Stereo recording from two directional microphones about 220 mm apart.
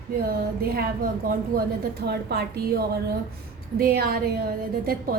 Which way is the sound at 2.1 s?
45° right (ahead or behind).